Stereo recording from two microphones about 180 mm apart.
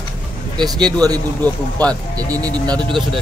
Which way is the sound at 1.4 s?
10° left (ahead or behind).